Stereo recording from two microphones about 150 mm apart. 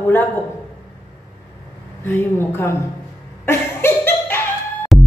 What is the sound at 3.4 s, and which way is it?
Laughter, 15° left (ahead or behind).